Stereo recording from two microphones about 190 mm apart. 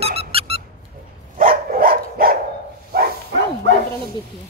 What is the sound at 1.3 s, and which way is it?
Dog, 50° right (ahead or behind).